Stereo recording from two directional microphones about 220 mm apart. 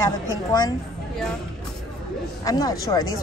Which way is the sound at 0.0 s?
15° left (ahead or behind).